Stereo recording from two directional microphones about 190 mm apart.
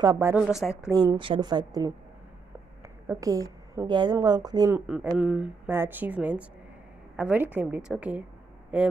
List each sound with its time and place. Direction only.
0.0 s a woman's voice: 15° right (ahead or behind)
0.4 s speech: 5° right (ahead or behind)
0.9 s a woman's voice: 25° right (ahead or behind)
3.1 s a woman's voice: 20° right (ahead or behind)
5.1 s a woman's voice: 5° right (ahead or behind)